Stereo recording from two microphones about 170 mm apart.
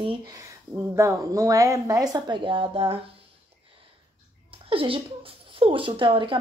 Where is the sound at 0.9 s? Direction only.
15° right (ahead or behind); by 3.0 s 35° right (ahead or behind).